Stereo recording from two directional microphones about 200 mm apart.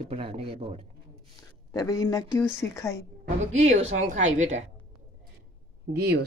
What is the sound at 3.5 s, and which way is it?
A woman's voice, 35° right (ahead or behind).